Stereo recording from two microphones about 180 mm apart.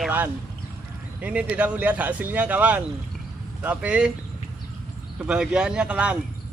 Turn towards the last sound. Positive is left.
turn(degrees=-5)  # may be behind; listen again after turning